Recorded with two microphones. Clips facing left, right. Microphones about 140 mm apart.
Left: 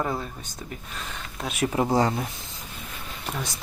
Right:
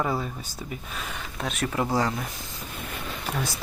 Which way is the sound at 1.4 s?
10° left (ahead or behind).